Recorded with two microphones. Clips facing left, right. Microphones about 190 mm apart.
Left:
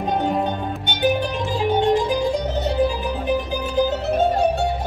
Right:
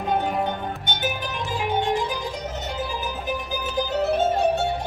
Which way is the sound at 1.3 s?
30° left (ahead or behind).